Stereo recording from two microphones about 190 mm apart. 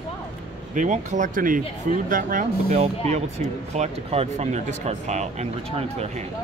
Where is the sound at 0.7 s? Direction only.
40° right (ahead or behind).